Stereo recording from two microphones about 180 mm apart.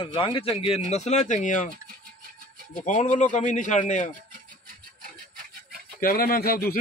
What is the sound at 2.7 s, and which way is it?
Speech, 45° left (ahead or behind).